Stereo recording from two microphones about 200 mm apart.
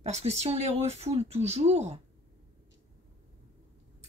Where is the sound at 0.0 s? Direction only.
35° right (ahead or behind).